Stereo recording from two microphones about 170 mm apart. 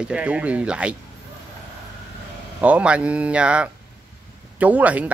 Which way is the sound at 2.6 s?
5° right (ahead or behind).